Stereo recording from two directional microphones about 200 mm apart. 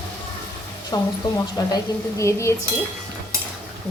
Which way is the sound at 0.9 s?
20° left (ahead or behind).